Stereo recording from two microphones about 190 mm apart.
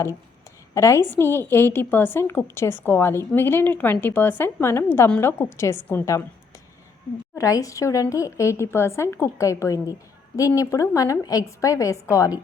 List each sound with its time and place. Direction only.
0.7 s a woman's voice: 15° left (ahead or behind)
7.3 s a woman's voice: 15° left (ahead or behind)